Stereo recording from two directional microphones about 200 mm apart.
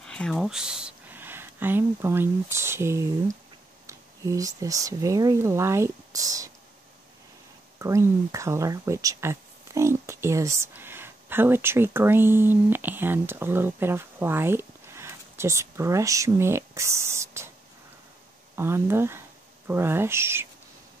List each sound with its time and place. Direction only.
0.0 s speech: 5° left (ahead or behind); by 6.5 s 15° right (ahead or behind)
7.8 s speech: 15° right (ahead or behind)
18.6 s speech: 10° right (ahead or behind)